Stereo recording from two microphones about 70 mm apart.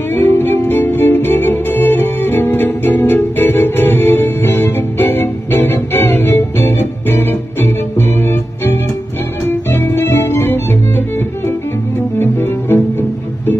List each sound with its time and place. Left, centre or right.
0.1 s music: left
9.5 s guitar: left
12.2 s music: left